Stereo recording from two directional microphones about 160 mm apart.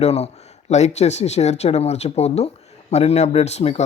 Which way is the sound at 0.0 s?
40° left (ahead or behind).